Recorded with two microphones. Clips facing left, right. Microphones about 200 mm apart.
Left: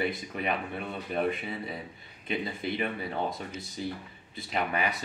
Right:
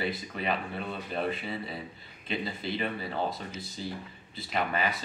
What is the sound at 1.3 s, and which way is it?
Speech, 30° right (ahead or behind).